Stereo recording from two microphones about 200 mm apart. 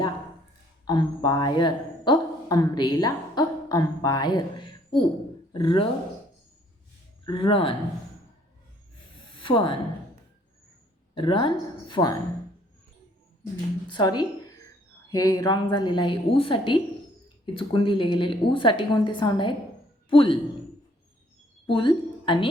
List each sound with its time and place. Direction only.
0.9 s a woman's voice: 20° left (ahead or behind)
7.3 s a woman's voice: 25° left (ahead or behind)
9.3 s a sound: 25° left (ahead or behind)
11.1 s a woman's voice: 25° left (ahead or behind)
13.8 s a woman's voice: 20° left (ahead or behind)
21.7 s a woman's voice: 25° left (ahead or behind)